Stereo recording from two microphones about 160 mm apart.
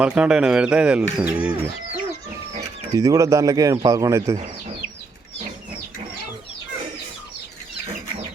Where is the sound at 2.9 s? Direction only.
20° right (ahead or behind).